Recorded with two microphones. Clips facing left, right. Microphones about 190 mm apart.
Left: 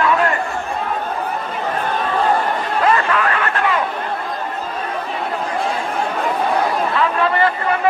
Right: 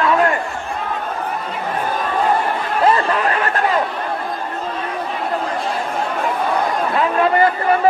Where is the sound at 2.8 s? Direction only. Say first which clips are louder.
Right 1 dB; 30° right (ahead or behind).